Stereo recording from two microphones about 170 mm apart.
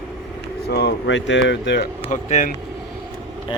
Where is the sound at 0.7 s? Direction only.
75° left (ahead or behind).